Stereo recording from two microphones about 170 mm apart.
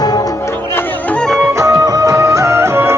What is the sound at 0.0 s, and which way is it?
Music, 20° left (ahead or behind).